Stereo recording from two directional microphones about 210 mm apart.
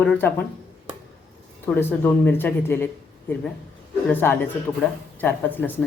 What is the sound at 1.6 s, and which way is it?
Speech, 10° left (ahead or behind).